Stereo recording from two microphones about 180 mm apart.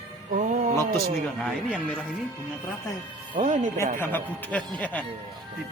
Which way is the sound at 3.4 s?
40° right (ahead or behind).